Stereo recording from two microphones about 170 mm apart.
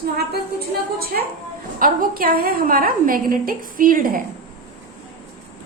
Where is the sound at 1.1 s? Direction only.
60° right (ahead or behind).